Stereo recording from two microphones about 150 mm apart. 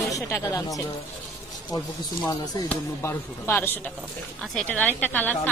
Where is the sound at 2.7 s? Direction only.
15° left (ahead or behind).